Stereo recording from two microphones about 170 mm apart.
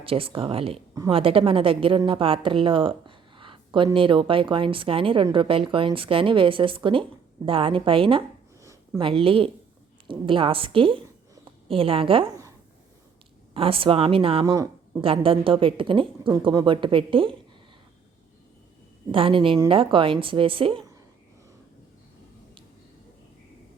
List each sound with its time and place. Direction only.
0.0 s a woman's voice: 35° right (ahead or behind)
8.6 s a sound: 15° right (ahead or behind)
9.0 s a woman's voice: 30° right (ahead or behind)
13.5 s a woman's voice: 35° right (ahead or behind)
14.5 s speech: 20° right (ahead or behind)
15.0 s a woman's voice: 30° right (ahead or behind)
19.1 s a woman's voice: 30° right (ahead or behind)